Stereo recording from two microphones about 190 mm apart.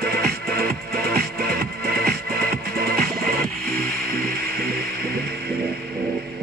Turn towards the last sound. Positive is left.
turn(degrees=-55)  # may be behind; listen again after turning